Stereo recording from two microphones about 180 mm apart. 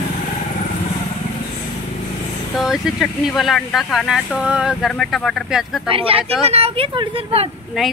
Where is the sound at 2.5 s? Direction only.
Centre (ahead or behind).